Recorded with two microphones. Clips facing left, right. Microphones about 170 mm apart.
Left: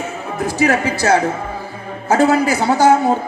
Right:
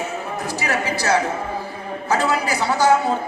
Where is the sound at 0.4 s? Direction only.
50° left (ahead or behind).